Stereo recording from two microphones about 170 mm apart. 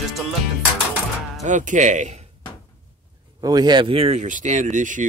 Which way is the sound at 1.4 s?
45° right (ahead or behind).